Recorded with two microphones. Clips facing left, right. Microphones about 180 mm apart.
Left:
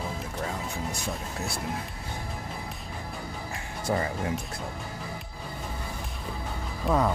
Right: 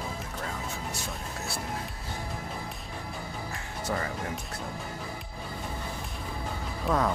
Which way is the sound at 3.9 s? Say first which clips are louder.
Left 4 dB; 15° left (ahead or behind).